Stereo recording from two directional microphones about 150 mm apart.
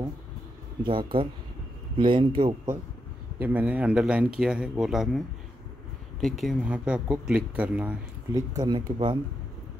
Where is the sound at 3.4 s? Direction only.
10° right (ahead or behind).